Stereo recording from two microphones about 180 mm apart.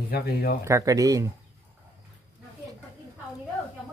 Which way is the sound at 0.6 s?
15° right (ahead or behind).